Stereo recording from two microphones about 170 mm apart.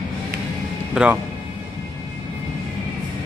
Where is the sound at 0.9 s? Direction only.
5° right (ahead or behind).